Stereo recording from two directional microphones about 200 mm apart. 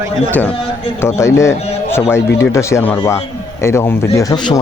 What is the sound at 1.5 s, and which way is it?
Speech, 30° left (ahead or behind).